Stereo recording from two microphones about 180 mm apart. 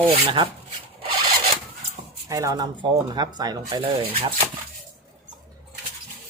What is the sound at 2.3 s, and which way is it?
Speech, 20° right (ahead or behind).